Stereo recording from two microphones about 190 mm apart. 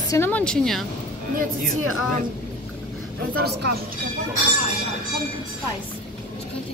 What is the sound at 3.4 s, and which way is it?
Speech, 60° right (ahead or behind).